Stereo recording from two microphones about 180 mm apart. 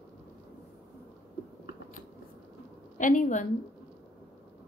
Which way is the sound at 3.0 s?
45° left (ahead or behind).